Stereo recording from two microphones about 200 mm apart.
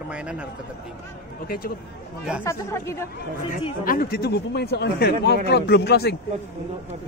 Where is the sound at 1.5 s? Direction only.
50° left (ahead or behind).